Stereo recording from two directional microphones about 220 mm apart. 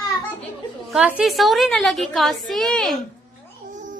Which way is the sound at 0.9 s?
5° right (ahead or behind).